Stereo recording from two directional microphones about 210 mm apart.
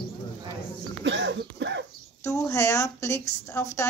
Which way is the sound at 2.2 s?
15° left (ahead or behind).